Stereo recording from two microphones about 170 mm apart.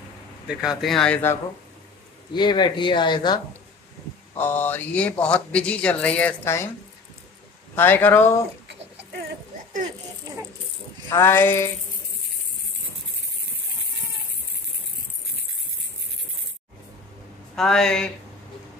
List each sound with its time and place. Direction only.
0.5 s speech: 5° right (ahead or behind)
2.3 s speech: 25° left (ahead or behind)
4.4 s speech: 10° left (ahead or behind)
7.7 s speech: 10° left (ahead or behind)
11.1 s speech: 15° left (ahead or behind)
17.6 s speech: 5° left (ahead or behind)